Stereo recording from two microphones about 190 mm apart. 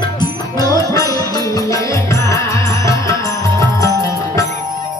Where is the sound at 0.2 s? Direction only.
20° left (ahead or behind).